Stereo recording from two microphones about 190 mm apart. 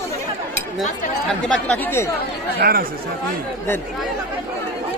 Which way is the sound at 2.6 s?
50° right (ahead or behind).